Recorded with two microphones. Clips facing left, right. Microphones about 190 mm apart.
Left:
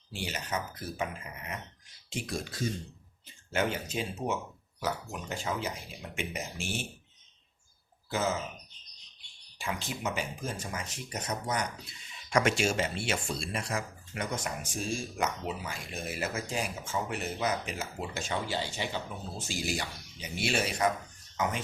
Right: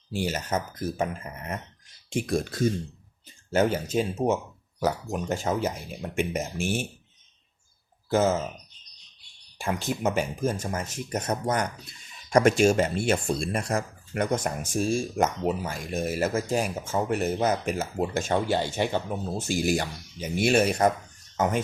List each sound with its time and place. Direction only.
0.1 s speech: 45° right (ahead or behind)
8.1 s speech: 45° right (ahead or behind)
9.6 s speech: 50° right (ahead or behind)